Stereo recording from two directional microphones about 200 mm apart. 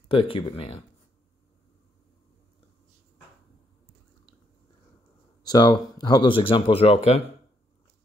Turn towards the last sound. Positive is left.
turn(degrees=30)  # may be behind; listen again after turning